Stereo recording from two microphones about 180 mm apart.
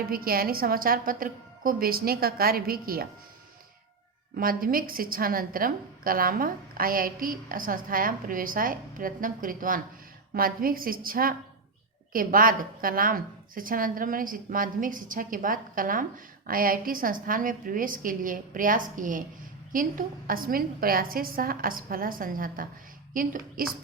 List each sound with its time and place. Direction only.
0.1 s a woman's voice: 55° right (ahead or behind)
4.4 s a woman's voice: 55° right (ahead or behind)